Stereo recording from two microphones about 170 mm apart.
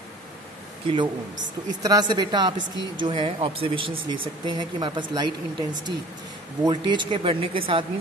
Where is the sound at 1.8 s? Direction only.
25° right (ahead or behind).